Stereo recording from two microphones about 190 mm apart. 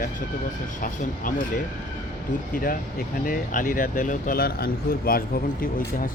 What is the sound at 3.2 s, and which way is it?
A man's voice, 45° left (ahead or behind).